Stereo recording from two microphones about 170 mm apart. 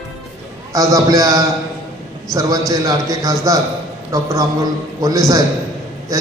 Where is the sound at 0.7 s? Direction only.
20° right (ahead or behind).